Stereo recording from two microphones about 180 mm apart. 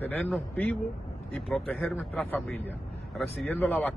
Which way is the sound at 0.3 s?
10° left (ahead or behind).